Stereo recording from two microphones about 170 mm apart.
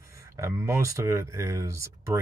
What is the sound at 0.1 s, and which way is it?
Speech, 15° right (ahead or behind).